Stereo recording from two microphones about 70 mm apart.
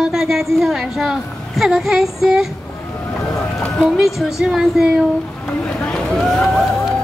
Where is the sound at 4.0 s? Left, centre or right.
Centre.